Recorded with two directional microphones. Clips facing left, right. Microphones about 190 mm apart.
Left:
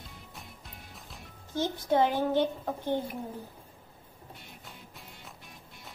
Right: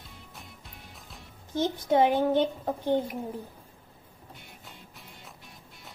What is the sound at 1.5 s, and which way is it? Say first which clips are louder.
A child's voice: right 3 dB; 20° right (ahead or behind).